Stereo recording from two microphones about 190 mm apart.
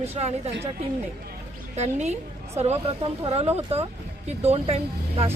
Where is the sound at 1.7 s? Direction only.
35° right (ahead or behind).